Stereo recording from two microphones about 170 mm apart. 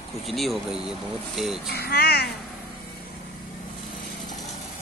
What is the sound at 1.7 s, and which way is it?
Speech, 65° left (ahead or behind).